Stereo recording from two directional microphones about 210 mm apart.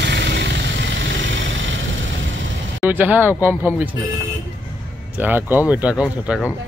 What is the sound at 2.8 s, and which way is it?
Speech, 10° right (ahead or behind).